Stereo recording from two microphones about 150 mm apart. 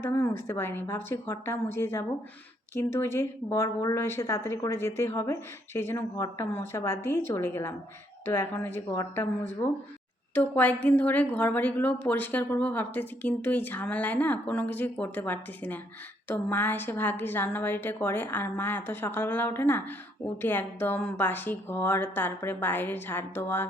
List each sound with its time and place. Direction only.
0.0 s a woman's voice: 15° left (ahead or behind)